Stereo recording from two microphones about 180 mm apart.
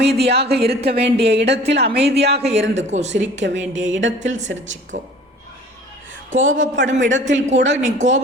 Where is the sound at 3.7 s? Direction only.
90° right.